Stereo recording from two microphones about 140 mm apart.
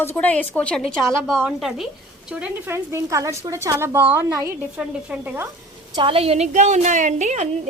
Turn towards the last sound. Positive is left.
turn(degrees=-55)  # may be behind; listen again after turning